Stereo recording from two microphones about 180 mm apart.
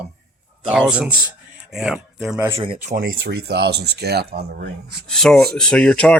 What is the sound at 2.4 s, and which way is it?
Speech, 15° right (ahead or behind).